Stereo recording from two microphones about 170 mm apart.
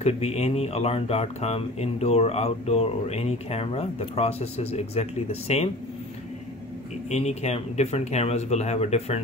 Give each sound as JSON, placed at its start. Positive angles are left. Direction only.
{"t": 0.0, "sound": "speech", "side_deg": 40}
{"t": 7.1, "sound": "speech", "side_deg": 40}